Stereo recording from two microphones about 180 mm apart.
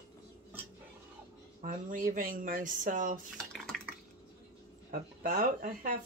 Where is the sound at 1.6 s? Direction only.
50° right (ahead or behind).